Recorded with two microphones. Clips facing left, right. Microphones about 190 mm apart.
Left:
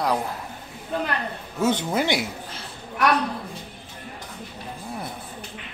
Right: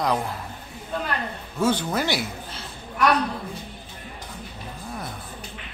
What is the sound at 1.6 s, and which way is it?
Speech, 20° left (ahead or behind).